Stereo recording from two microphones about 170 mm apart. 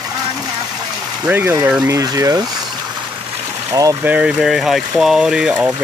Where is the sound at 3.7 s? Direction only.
20° right (ahead or behind).